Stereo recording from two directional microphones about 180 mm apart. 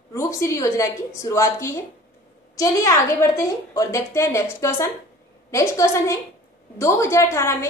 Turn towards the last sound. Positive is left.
turn(degrees=15)  # may be behind; listen again after turning